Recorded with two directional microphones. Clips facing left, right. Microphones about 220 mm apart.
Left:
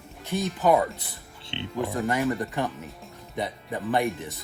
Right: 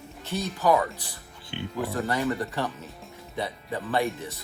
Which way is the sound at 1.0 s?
25° left (ahead or behind).